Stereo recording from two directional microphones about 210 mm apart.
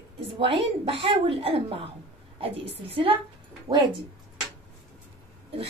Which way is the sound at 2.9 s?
25° right (ahead or behind).